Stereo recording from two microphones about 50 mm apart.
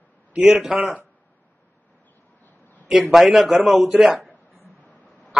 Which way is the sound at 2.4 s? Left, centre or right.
Left.